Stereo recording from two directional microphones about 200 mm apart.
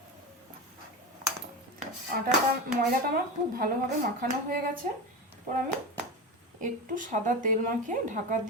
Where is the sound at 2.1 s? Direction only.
45° right (ahead or behind).